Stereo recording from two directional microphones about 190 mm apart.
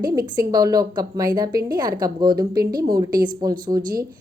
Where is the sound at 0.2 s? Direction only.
20° right (ahead or behind).